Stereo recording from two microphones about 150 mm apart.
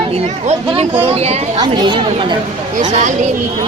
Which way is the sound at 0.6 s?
40° right (ahead or behind).